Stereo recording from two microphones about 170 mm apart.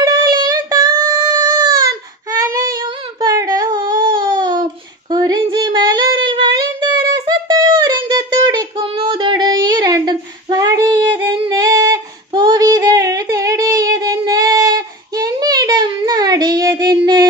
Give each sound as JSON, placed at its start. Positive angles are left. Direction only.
{"t": 0.0, "sound": "child singing", "side_deg": -25}
{"t": 3.2, "sound": "a sound", "side_deg": -20}
{"t": 5.1, "sound": "female singing", "side_deg": -25}